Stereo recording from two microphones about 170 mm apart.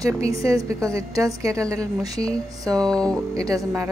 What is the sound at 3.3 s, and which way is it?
Speech, 20° right (ahead or behind).